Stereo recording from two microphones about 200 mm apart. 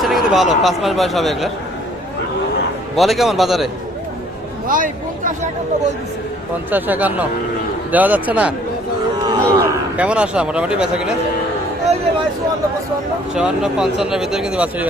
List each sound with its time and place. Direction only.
0.0 s a sound: centre (ahead or behind)
0.6 s speech: centre (ahead or behind)
2.9 s speech: centre (ahead or behind)
4.7 s speech: 40° right (ahead or behind)
6.7 s speech: 10° right (ahead or behind)
9.2 s a sound: 20° right (ahead or behind)
10.0 s speech: 5° right (ahead or behind)
13.3 s speech: 5° right (ahead or behind)